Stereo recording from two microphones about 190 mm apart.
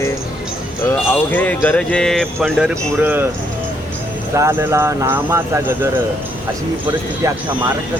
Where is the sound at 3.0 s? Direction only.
10° right (ahead or behind).